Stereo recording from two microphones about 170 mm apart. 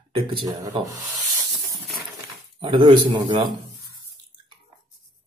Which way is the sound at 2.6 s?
30° right (ahead or behind).